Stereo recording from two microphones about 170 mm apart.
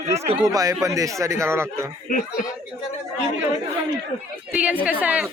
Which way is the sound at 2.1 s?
50° left (ahead or behind).